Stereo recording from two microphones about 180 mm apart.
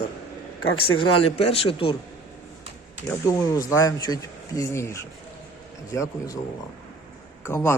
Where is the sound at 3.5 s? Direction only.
20° left (ahead or behind).